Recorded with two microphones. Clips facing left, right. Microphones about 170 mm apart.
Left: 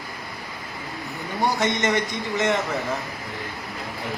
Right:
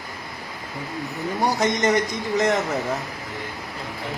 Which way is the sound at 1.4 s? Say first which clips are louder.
Right 1 dB; 45° right (ahead or behind).